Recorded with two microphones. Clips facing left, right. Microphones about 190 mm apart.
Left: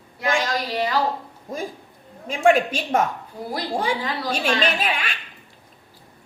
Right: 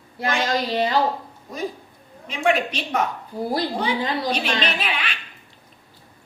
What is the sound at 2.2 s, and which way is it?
Speech, 45° left (ahead or behind).